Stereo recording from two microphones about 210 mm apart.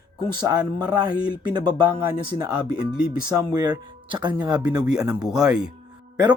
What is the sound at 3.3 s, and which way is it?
Speech, 20° right (ahead or behind).